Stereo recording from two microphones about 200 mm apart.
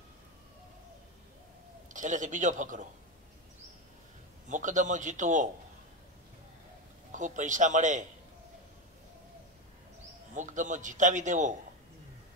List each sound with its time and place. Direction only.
2.0 s a man's voice: 40° right (ahead or behind)
4.5 s a man's voice: 40° right (ahead or behind)
7.1 s a man's voice: 40° right (ahead or behind)
10.3 s a man's voice: 40° right (ahead or behind)